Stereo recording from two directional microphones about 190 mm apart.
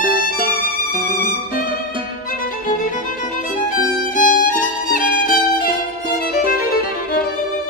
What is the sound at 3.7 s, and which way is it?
Violin, 45° left (ahead or behind).